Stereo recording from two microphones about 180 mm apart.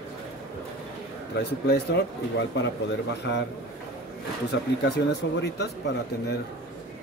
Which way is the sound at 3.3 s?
90° left.